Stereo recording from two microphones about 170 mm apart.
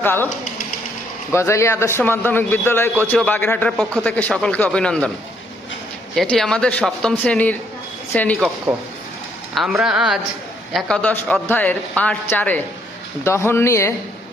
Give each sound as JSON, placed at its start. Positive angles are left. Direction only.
{"t": 0.0, "sound": "speech", "side_deg": 10}
{"t": 1.3, "sound": "a man's voice", "side_deg": 15}
{"t": 6.1, "sound": "a man's voice", "side_deg": 0}
{"t": 9.6, "sound": "a man's voice", "side_deg": -5}